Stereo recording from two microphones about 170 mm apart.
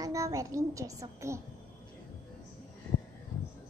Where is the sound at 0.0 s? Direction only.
20° right (ahead or behind).